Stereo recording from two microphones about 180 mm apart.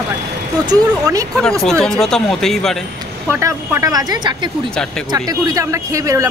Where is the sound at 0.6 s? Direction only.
20° right (ahead or behind).